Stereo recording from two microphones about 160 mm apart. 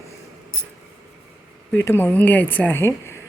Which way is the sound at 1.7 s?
15° left (ahead or behind).